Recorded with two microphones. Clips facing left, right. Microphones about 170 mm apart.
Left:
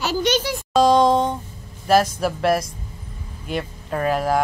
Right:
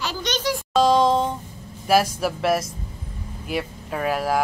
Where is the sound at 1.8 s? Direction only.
10° right (ahead or behind).